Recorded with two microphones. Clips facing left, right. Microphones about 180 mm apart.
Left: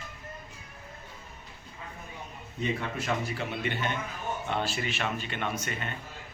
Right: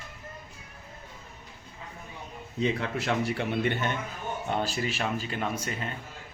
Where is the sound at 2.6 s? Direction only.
80° right; by 3.9 s 55° right (ahead or behind).